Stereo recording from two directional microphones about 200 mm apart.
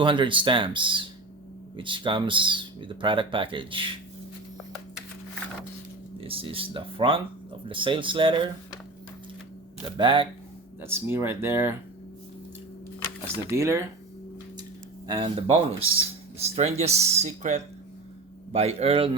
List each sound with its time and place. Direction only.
0.0 s speech: 25° right (ahead or behind)
6.1 s speech: 25° right (ahead or behind)
9.8 s speech: 25° right (ahead or behind)
10.8 s speech: 10° right (ahead or behind)
13.2 s speech: 15° right (ahead or behind)
15.0 s speech: 25° right (ahead or behind)